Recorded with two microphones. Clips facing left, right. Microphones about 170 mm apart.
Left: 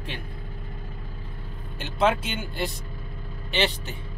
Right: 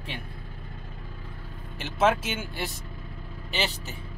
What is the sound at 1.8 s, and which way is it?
Speech, 5° right (ahead or behind).